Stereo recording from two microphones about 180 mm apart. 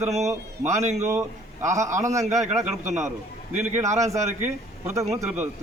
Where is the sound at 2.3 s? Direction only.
40° right (ahead or behind).